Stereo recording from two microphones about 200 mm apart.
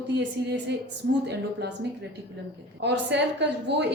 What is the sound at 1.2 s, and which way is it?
Speech, 55° right (ahead or behind).